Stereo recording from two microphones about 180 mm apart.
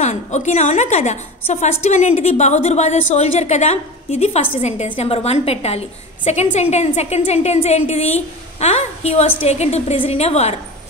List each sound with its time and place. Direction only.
0.0 s a woman's voice: 40° left (ahead or behind)